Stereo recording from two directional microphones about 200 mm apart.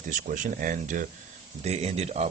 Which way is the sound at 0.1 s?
40° right (ahead or behind).